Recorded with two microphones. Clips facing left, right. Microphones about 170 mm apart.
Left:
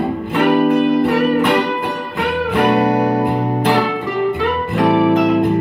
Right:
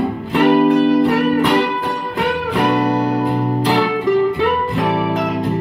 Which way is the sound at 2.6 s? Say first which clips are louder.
Left 2 dB; 65° left (ahead or behind).